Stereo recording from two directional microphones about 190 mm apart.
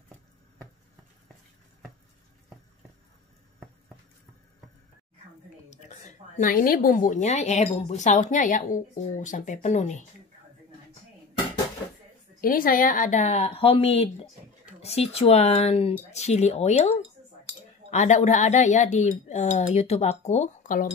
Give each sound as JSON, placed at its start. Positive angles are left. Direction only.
{"t": 5.7, "sound": "a woman's voice", "side_deg": 40}
{"t": 12.4, "sound": "a woman's voice", "side_deg": 50}